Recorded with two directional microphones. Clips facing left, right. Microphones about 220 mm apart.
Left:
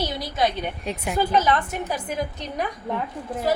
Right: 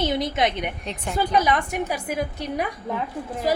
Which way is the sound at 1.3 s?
15° right (ahead or behind).